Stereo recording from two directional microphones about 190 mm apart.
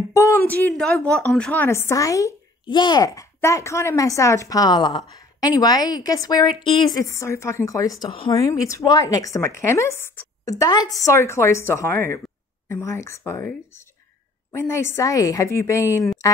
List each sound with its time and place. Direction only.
0.1 s a woman's voice: 10° left (ahead or behind)